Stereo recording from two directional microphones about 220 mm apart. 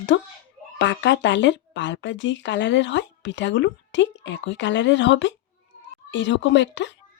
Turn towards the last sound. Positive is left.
turn(degrees=55)  # may be behind; listen again after turning